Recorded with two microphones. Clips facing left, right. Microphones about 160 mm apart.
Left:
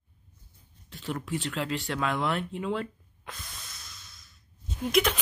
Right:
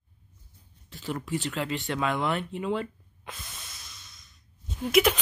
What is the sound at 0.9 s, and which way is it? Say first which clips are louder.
A woman's voice: right 1 dB; centre (ahead or behind).